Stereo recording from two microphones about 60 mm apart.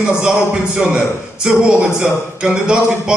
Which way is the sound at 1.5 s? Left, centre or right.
Centre.